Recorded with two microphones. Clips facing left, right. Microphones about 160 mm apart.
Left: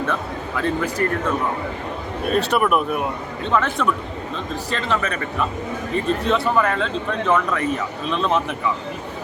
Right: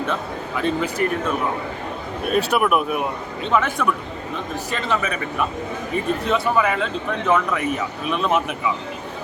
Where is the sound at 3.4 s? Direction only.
15° right (ahead or behind).